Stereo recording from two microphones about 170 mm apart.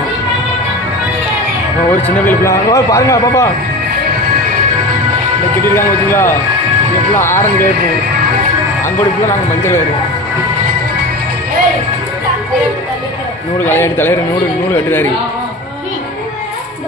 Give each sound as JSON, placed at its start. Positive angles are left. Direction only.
{"t": 1.9, "sound": "a man's voice", "side_deg": 10}
{"t": 5.7, "sound": "a man's voice", "side_deg": 15}
{"t": 13.6, "sound": "a man's voice", "side_deg": 15}